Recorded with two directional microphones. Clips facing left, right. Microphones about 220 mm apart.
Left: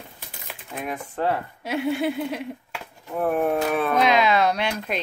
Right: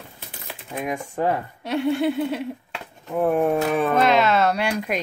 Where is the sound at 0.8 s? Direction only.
15° right (ahead or behind).